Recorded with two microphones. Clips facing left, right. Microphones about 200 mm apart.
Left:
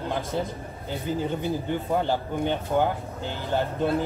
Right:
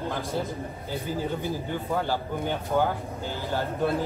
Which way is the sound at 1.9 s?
20° left (ahead or behind).